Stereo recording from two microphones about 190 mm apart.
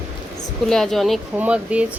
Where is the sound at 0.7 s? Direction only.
Centre (ahead or behind).